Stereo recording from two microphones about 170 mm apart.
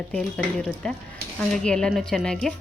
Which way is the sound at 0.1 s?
5° left (ahead or behind).